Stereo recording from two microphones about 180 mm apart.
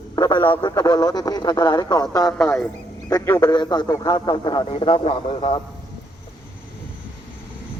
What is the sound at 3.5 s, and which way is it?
A man's voice, 25° left (ahead or behind).